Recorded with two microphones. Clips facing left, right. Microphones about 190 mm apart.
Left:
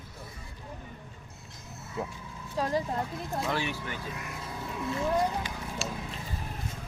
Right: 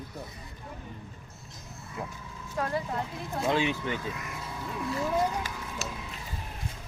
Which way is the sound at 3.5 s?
20° right (ahead or behind).